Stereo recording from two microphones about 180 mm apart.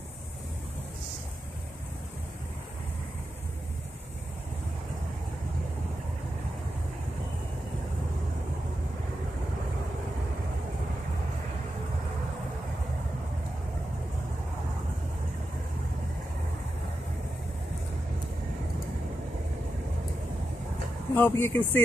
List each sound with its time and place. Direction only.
21.1 s speech: 10° left (ahead or behind)